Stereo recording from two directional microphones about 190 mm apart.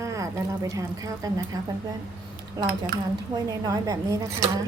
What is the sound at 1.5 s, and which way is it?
Speech, 20° right (ahead or behind).